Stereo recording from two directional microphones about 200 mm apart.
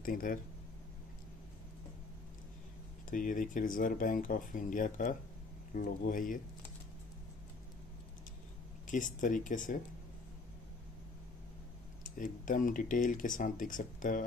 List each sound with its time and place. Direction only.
0.0 s speech: 45° left (ahead or behind)
3.1 s speech: 40° left (ahead or behind)
8.8 s speech: 40° left (ahead or behind)
12.2 s speech: 40° left (ahead or behind)